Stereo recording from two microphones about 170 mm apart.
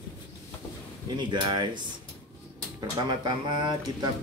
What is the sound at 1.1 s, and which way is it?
Speech, 25° right (ahead or behind).